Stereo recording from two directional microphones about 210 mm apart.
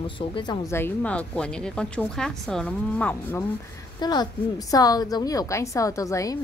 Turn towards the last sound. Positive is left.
turn(degrees=15)  # may be behind; listen again after turning